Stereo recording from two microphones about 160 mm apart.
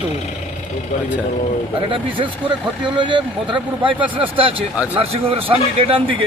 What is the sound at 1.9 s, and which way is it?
Speech, 30° right (ahead or behind).